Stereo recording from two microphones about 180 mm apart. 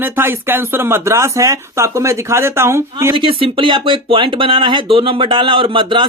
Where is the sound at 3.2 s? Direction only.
30° right (ahead or behind).